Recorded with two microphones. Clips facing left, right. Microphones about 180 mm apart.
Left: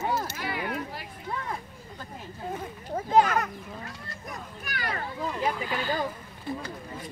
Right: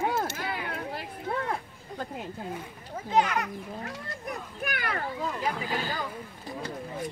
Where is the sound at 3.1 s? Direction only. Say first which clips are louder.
Left 3 dB; 45° left (ahead or behind).